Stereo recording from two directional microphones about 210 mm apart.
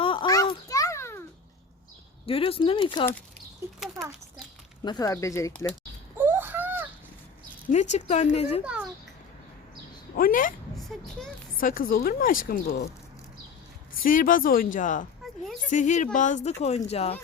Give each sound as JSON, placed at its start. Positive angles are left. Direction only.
{"t": 0.0, "sound": "a sound", "side_deg": 25}
{"t": 2.2, "sound": "speech", "side_deg": 25}
{"t": 3.6, "sound": "speech", "side_deg": -10}
{"t": 4.8, "sound": "speech", "side_deg": 20}
{"t": 6.1, "sound": "a sound", "side_deg": -10}
{"t": 7.7, "sound": "speech", "side_deg": 35}
{"t": 8.6, "sound": "a sound", "side_deg": -5}
{"t": 10.2, "sound": "a woman's voice", "side_deg": 40}
{"t": 10.8, "sound": "speech", "side_deg": 0}
{"t": 11.5, "sound": "a woman's voice", "side_deg": 40}
{"t": 14.0, "sound": "speech", "side_deg": 40}